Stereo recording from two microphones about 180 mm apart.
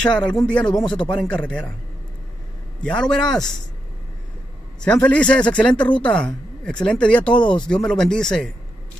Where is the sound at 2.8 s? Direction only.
5° left (ahead or behind).